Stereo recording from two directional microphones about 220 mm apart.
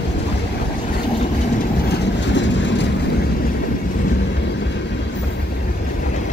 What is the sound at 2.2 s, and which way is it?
Vehicle, 55° left (ahead or behind).